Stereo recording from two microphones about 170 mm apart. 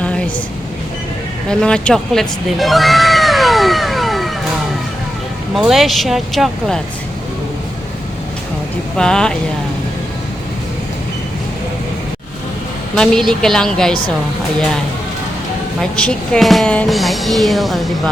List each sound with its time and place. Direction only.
0.0 s vehicle: 5° left (ahead or behind)
1.5 s cat: 5° left (ahead or behind)
5.5 s speech: centre (ahead or behind)
9.0 s speech: 5° left (ahead or behind)
13.0 s speech: 5° left (ahead or behind)
15.8 s speech: 5° left (ahead or behind)